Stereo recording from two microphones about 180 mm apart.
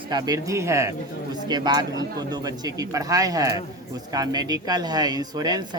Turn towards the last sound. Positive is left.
turn(degrees=-20)  # may be behind; listen again after turning